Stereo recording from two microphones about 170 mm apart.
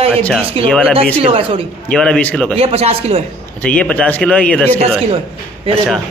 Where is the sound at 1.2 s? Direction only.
30° right (ahead or behind).